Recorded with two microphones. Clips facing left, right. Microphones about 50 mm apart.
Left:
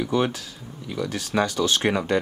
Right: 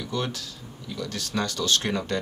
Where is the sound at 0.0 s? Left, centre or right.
Left.